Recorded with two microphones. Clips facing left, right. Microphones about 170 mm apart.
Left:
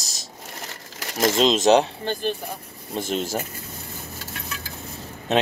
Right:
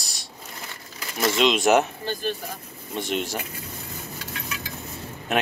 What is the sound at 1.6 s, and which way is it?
Speech, 20° left (ahead or behind).